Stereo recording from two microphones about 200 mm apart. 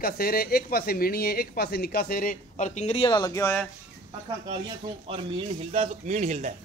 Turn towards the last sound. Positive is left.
turn(degrees=-35)  # may be behind; listen again after turning